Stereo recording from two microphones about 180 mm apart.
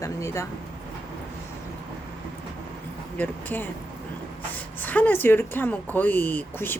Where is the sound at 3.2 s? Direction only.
10° left (ahead or behind).